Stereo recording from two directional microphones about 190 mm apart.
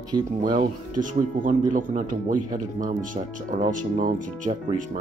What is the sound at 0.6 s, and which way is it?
Speech, 40° right (ahead or behind).